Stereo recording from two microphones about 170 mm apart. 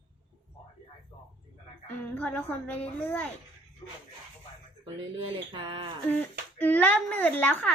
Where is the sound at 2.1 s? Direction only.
10° left (ahead or behind).